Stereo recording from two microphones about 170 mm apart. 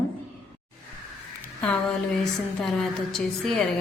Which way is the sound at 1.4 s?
5° left (ahead or behind).